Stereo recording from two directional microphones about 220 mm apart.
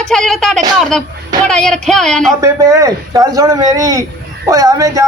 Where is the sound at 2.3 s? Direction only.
15° right (ahead or behind).